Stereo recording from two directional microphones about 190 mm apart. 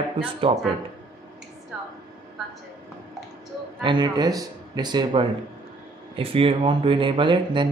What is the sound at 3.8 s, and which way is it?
Speech, 25° right (ahead or behind).